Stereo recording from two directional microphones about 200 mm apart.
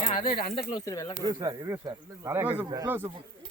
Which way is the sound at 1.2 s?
20° right (ahead or behind).